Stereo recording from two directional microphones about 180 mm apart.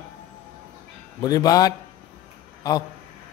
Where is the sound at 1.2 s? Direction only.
20° left (ahead or behind).